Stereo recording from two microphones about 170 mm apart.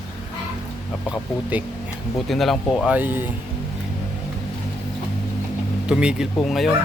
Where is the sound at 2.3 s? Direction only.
Centre (ahead or behind).